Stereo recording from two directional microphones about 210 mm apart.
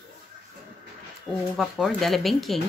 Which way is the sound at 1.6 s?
Centre (ahead or behind).